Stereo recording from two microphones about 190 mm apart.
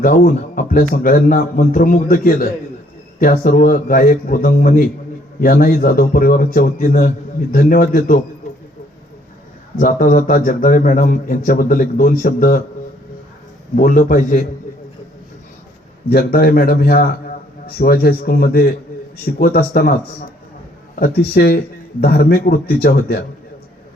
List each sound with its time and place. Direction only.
0.0 s a man's voice: 50° left (ahead or behind)
9.8 s a man's voice: 45° left (ahead or behind)
13.7 s a man's voice: 45° left (ahead or behind)
16.0 s a man's voice: 55° left (ahead or behind)